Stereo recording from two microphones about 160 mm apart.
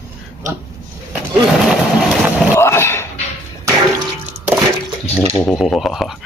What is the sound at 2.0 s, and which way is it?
Boat, 5° right (ahead or behind).